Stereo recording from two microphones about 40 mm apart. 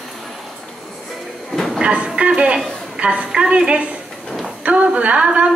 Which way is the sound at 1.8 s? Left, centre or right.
Right.